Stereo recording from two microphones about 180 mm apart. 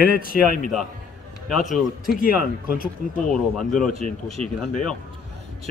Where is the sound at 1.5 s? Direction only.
Centre (ahead or behind).